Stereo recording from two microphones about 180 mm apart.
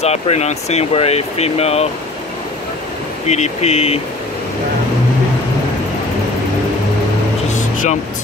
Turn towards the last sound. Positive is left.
turn(degrees=40)  # may be behind; listen again after turning